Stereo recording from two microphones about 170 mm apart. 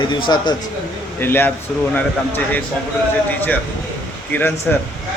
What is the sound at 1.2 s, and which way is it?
Speech, 10° left (ahead or behind).